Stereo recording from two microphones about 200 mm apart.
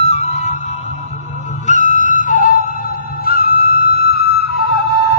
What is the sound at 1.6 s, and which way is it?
Music, 35° left (ahead or behind).